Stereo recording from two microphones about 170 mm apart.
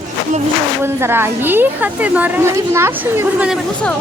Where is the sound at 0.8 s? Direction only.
15° right (ahead or behind).